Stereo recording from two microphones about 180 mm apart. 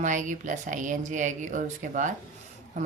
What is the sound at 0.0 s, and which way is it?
A woman's voice, 45° right (ahead or behind).